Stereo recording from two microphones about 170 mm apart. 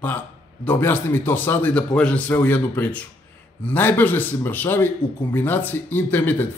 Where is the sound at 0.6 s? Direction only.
10° left (ahead or behind).